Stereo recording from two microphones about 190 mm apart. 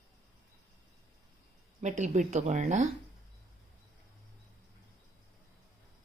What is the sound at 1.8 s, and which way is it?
Speech, 40° right (ahead or behind).